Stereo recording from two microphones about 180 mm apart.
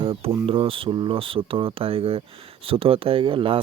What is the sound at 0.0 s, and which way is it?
Speech, 30° right (ahead or behind).